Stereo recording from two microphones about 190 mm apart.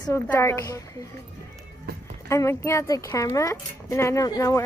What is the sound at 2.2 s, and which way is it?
A woman's voice, 15° left (ahead or behind).